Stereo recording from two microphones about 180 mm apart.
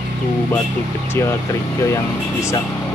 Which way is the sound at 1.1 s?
15° left (ahead or behind).